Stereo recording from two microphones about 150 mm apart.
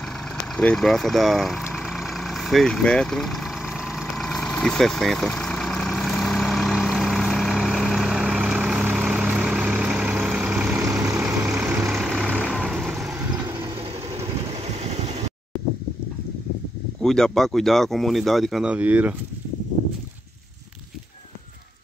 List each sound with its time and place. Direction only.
0.6 s vehicle: 5° left (ahead or behind); by 12.9 s 10° right (ahead or behind)
12.9 s vehicle: centre (ahead or behind)
14.8 s vehicle: 45° right (ahead or behind)
17.0 s speech: 5° left (ahead or behind)